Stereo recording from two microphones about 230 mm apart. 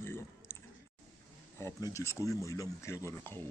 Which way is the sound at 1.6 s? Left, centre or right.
Centre.